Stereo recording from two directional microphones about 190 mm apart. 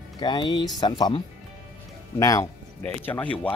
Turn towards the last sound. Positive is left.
turn(degrees=5)  # may be behind; listen again after turning